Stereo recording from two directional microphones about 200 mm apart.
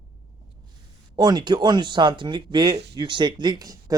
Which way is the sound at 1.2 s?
20° right (ahead or behind).